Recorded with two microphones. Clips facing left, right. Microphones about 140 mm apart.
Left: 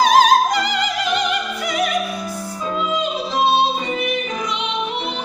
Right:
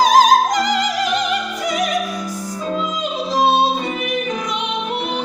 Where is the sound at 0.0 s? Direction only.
40° right (ahead or behind).